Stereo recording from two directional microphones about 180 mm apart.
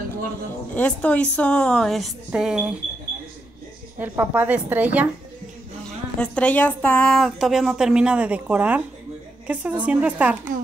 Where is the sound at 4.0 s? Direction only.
10° right (ahead or behind).